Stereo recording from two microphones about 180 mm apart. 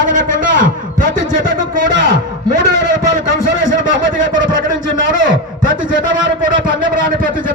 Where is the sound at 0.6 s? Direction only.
50° right (ahead or behind).